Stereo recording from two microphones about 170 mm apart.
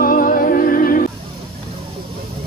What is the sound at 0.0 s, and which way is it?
Music, 55° left (ahead or behind).